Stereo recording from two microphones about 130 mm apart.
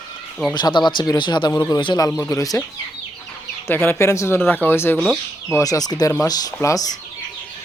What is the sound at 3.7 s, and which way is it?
Speech, 15° left (ahead or behind).